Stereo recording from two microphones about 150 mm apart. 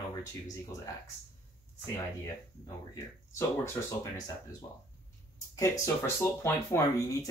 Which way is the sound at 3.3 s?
20° left (ahead or behind).